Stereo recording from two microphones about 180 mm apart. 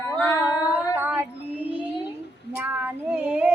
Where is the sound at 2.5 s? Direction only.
10° right (ahead or behind).